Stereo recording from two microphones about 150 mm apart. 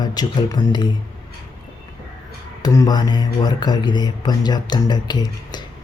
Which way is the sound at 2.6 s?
25° left (ahead or behind).